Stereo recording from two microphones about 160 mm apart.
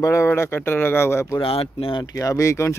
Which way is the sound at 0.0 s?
20° left (ahead or behind).